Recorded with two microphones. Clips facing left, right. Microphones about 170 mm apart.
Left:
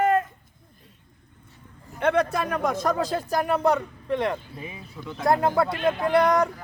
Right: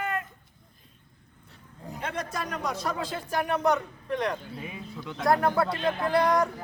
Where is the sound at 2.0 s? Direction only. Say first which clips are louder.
Left 11 dB; 65° left (ahead or behind); by 6.5 s 20° left (ahead or behind).